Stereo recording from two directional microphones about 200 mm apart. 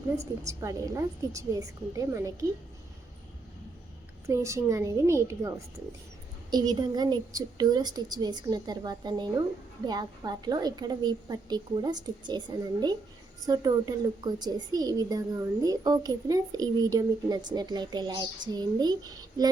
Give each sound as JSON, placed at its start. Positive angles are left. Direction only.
{"t": 0.4, "sound": "a woman's voice", "side_deg": -15}
{"t": 4.3, "sound": "a woman's voice", "side_deg": -15}